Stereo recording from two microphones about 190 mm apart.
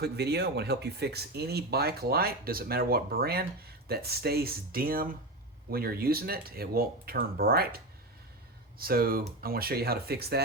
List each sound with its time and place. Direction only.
0.0 s speech: 60° right (ahead or behind)
8.8 s speech: 50° right (ahead or behind)